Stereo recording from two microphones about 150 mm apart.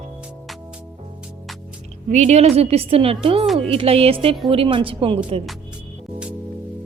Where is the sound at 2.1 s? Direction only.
50° right (ahead or behind).